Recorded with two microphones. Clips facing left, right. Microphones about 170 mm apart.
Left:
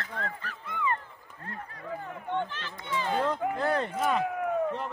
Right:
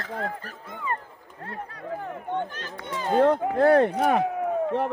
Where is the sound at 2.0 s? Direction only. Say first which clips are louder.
Right 1 dB; 45° right (ahead or behind).